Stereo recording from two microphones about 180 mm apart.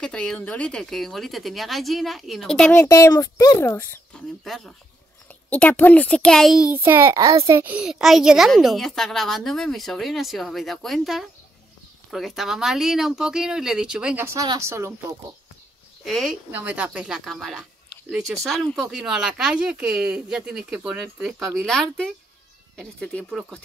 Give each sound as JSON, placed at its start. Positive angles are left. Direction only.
{"t": 0.0, "sound": "a child's voice", "side_deg": 5}
{"t": 2.8, "sound": "speech", "side_deg": 15}
{"t": 4.5, "sound": "a child's voice", "side_deg": 0}
{"t": 16.0, "sound": "a child's voice", "side_deg": 0}